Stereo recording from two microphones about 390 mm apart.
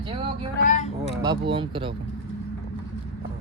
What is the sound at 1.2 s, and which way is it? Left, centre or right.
Speech, centre.